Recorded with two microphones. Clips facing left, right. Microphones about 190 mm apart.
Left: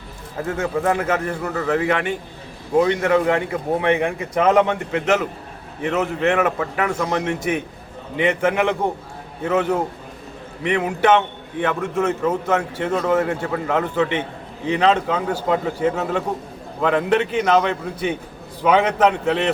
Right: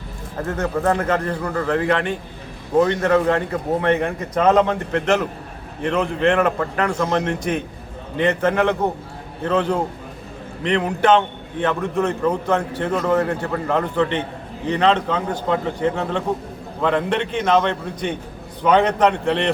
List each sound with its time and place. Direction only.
0.4 s a man's voice: 10° left (ahead or behind)